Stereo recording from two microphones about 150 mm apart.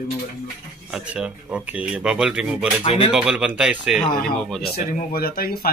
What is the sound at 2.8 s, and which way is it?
Speech, 40° left (ahead or behind).